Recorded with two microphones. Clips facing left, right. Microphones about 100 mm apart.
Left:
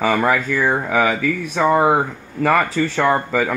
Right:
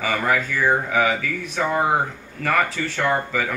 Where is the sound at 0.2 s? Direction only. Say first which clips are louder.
Left 3 dB; 50° left (ahead or behind).